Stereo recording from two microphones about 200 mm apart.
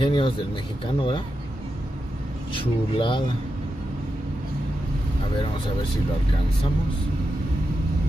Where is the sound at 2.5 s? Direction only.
25° left (ahead or behind).